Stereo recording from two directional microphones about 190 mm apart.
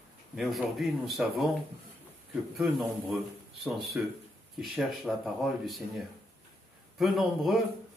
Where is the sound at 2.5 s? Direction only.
Centre (ahead or behind).